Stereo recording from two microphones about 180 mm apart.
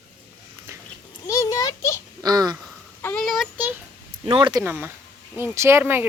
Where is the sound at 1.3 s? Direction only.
20° left (ahead or behind).